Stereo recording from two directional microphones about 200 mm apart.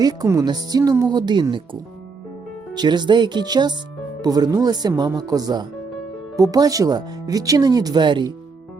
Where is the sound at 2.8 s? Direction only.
20° right (ahead or behind).